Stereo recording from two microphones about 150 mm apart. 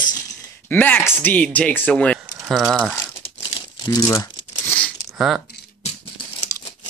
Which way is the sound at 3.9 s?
25° left (ahead or behind).